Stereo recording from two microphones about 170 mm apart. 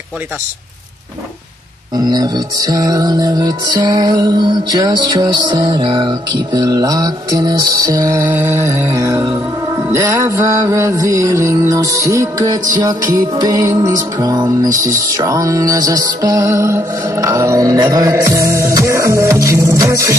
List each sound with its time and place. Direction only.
2.0 s music: 25° right (ahead or behind)